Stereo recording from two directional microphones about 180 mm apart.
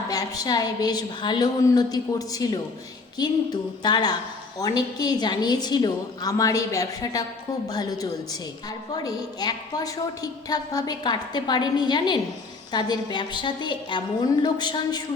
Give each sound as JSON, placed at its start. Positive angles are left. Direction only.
{"t": 0.1, "sound": "a woman's voice", "side_deg": 20}